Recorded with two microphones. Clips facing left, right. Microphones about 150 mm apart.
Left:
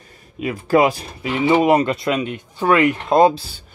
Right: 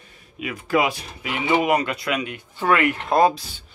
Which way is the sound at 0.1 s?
35° left (ahead or behind).